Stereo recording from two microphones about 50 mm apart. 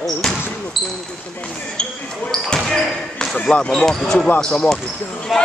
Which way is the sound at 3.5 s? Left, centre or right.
Left.